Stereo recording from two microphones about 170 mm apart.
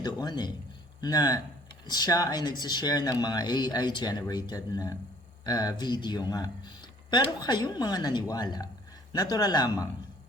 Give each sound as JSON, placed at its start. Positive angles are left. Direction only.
{"t": 0.0, "sound": "speech", "side_deg": 25}